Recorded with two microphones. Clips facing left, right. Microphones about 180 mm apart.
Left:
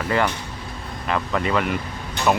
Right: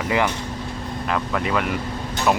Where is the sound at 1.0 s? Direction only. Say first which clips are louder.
Left 1 dB; centre (ahead or behind).